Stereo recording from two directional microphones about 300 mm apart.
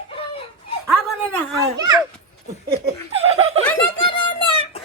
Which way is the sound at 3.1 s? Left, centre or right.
Centre.